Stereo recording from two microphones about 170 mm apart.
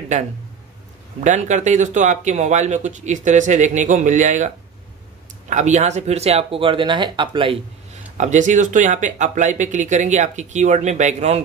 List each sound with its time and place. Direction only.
1.2 s speech: 45° right (ahead or behind)
5.5 s speech: 45° right (ahead or behind)
8.2 s speech: 45° right (ahead or behind)